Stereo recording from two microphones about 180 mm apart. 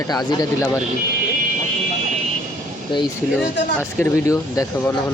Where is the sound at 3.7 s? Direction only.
15° left (ahead or behind).